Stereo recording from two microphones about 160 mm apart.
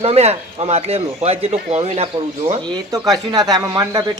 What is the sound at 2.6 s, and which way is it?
Speech, 25° right (ahead or behind).